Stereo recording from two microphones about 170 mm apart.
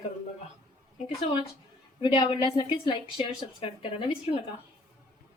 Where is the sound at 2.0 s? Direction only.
30° left (ahead or behind).